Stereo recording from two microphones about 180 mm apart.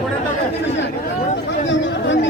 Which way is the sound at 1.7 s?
90° left.